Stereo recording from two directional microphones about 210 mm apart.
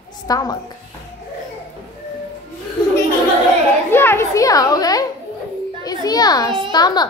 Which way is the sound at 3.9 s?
10° left (ahead or behind).